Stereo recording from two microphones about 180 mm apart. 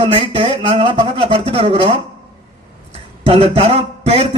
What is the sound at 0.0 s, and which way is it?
A man's voice, 30° right (ahead or behind).